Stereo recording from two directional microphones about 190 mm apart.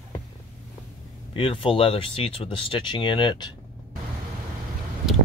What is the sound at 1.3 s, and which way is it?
Speech, 30° left (ahead or behind).